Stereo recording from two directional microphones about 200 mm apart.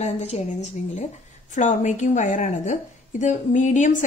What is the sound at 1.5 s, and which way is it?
A woman's voice, 40° left (ahead or behind).